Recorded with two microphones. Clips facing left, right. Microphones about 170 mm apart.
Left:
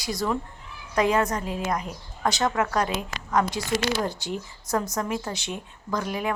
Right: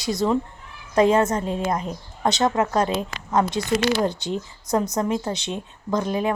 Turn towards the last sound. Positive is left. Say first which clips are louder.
# right 5 dB
turn(degrees=-30)  # may be behind; listen again after turning